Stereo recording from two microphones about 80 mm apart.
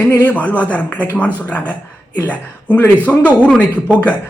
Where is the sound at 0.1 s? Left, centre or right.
Left.